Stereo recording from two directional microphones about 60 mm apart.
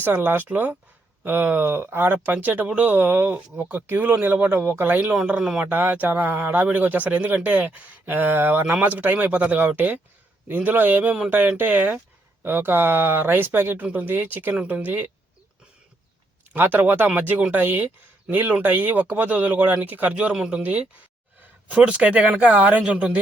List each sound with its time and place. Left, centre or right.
0.0 s speech: right
5.3 s speech: centre
5.6 s speech: right
11.1 s speech: centre
16.5 s speech: right
20.3 s speech: centre
20.6 s speech: right